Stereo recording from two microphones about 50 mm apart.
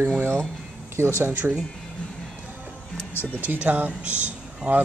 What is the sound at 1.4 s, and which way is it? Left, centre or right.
Speech, right.